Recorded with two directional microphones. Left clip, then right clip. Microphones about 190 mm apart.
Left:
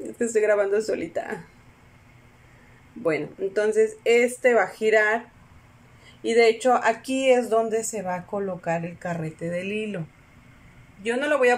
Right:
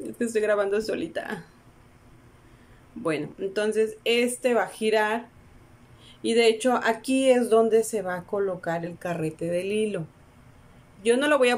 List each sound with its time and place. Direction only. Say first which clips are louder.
0.0 s speech: left 3 dB; centre (ahead or behind)
3.0 s speech: left 3 dB; centre (ahead or behind)
6.2 s speech: left 2 dB; centre (ahead or behind)